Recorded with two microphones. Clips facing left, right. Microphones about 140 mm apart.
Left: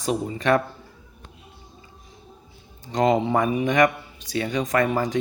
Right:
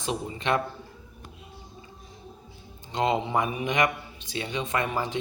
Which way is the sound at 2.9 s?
40° left (ahead or behind).